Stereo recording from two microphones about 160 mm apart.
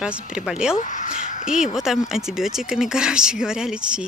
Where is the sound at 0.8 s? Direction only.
50° left (ahead or behind).